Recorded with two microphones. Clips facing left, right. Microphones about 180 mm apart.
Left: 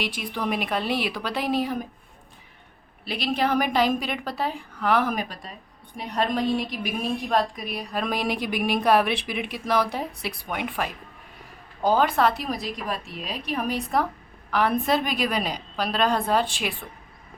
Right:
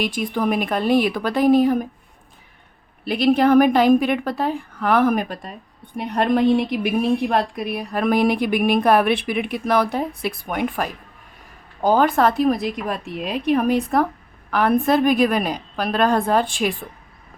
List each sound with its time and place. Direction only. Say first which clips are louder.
0.0 s a woman's voice: right 7 dB; 50° right (ahead or behind)
3.0 s a woman's voice: right 9 dB; 50° right (ahead or behind)